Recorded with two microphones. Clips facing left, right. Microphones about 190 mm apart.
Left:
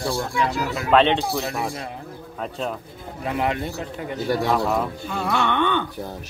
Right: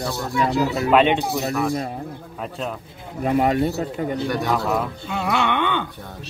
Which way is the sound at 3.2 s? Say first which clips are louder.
Right 6 dB; 45° right (ahead or behind).